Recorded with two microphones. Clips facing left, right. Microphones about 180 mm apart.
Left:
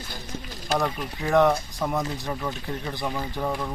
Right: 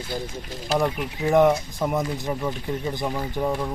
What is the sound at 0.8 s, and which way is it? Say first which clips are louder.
Speech: right 4 dB; 15° right (ahead or behind).